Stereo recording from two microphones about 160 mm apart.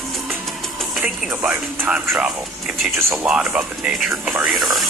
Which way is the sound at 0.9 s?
Centre (ahead or behind).